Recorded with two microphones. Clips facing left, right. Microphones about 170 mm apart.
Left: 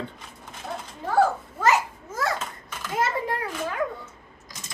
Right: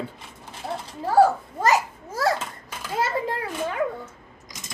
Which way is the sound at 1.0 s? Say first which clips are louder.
Right 4 dB; 35° right (ahead or behind).